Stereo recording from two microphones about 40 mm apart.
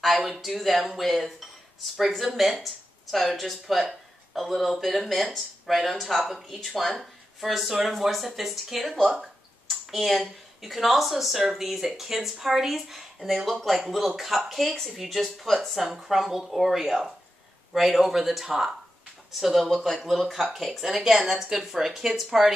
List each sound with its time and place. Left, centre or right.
0.3 s speech: centre